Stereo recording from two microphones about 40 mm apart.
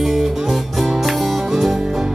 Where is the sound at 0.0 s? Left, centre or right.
Centre.